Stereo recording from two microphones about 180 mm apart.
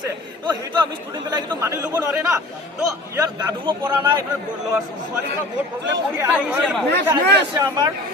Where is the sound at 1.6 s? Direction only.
15° right (ahead or behind).